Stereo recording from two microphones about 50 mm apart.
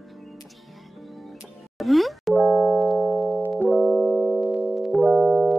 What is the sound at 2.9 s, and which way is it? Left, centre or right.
Music, centre.